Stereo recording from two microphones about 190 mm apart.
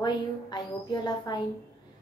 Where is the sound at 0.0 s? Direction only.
20° left (ahead or behind).